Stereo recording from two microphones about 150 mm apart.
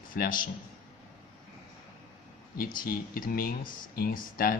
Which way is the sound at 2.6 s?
70° left (ahead or behind).